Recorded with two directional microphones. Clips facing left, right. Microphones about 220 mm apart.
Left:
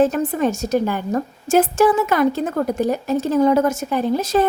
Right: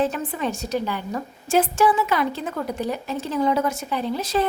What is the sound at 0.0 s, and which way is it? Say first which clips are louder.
A woman's voice: left 7 dB; 45° left (ahead or behind).